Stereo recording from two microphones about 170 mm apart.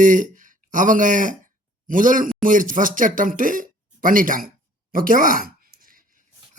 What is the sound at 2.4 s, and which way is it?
Speech, 50° right (ahead or behind).